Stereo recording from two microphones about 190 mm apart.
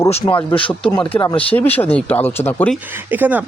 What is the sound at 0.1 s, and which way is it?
Speech, 30° left (ahead or behind).